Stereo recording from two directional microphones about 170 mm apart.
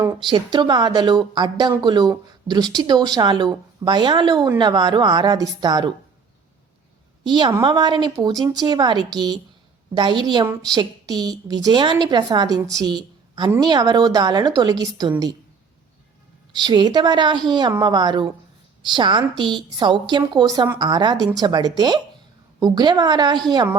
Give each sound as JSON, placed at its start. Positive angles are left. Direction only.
{"t": 0.2, "sound": "a woman's voice", "side_deg": -25}
{"t": 7.3, "sound": "a woman's voice", "side_deg": -25}
{"t": 16.6, "sound": "a woman's voice", "side_deg": -25}